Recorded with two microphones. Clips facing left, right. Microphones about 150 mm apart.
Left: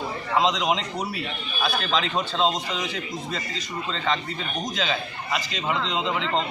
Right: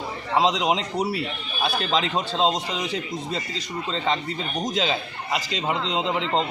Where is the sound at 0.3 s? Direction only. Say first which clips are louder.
Right 2 dB; 30° right (ahead or behind).